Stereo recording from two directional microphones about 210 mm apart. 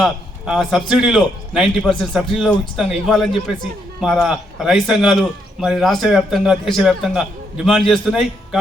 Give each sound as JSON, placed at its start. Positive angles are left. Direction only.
{"t": 0.0, "sound": "a man's voice", "side_deg": 0}